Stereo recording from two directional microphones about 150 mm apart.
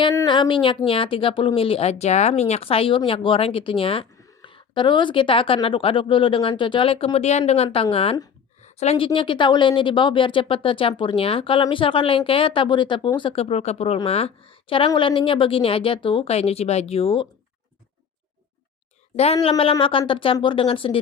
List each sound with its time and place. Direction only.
0.3 s a woman's voice: 35° left (ahead or behind)
19.1 s speech: 45° left (ahead or behind)